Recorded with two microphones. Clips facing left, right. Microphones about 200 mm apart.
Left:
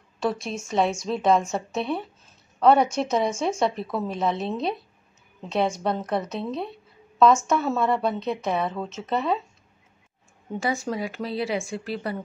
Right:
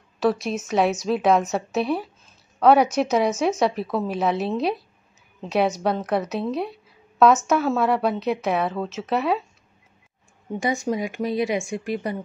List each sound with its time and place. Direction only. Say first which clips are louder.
0.2 s a woman's voice: right 5 dB; 5° right (ahead or behind)
10.6 s speech: right 3 dB; 15° right (ahead or behind)